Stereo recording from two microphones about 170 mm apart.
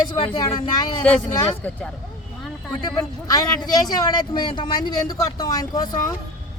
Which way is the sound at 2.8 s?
25° left (ahead or behind).